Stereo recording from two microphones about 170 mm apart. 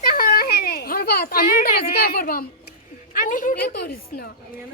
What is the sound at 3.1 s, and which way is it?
A woman's voice, 50° left (ahead or behind).